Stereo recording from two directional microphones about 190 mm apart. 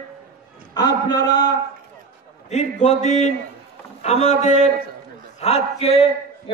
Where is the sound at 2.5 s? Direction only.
40° left (ahead or behind).